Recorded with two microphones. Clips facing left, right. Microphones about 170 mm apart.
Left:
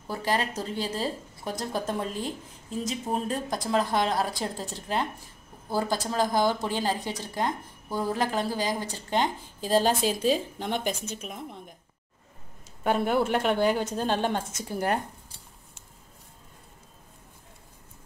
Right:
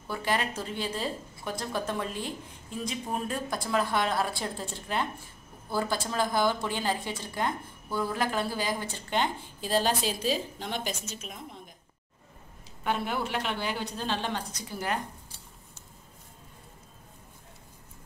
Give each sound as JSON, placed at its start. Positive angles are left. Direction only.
{"t": 0.1, "sound": "a woman's voice", "side_deg": 35}
{"t": 12.8, "sound": "a woman's voice", "side_deg": 50}